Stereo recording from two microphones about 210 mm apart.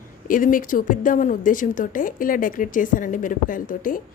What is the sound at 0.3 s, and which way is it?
Speech, 40° left (ahead or behind).